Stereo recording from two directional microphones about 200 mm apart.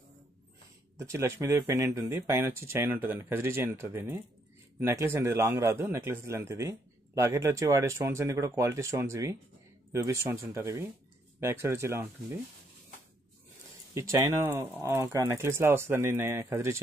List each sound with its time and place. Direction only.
0.9 s a man's voice: 15° right (ahead or behind)
13.9 s a man's voice: 15° right (ahead or behind)